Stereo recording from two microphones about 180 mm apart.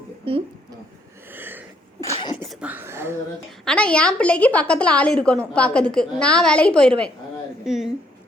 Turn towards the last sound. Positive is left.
turn(degrees=0)  # may be behind; listen again after turning